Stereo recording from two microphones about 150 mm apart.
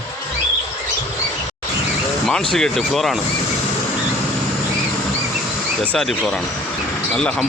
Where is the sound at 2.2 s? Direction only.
5° left (ahead or behind).